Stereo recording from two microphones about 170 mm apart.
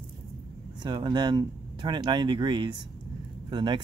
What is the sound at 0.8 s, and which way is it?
Speech, 25° right (ahead or behind).